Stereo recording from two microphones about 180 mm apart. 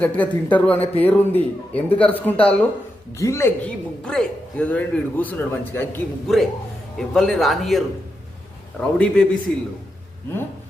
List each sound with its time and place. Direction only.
0.0 s a man's voice: 10° left (ahead or behind)
4.0 s a man's voice: 5° left (ahead or behind)
6.2 s a man's voice: centre (ahead or behind)